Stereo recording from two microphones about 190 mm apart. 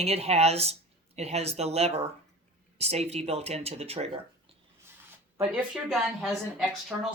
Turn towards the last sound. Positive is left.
turn(degrees=0)  # may be behind; listen again after turning